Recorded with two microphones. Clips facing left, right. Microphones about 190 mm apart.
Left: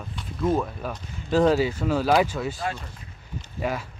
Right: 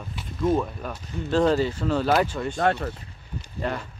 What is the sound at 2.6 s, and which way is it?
Speech, 65° right (ahead or behind).